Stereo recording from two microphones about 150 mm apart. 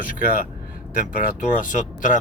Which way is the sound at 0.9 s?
60° left (ahead or behind).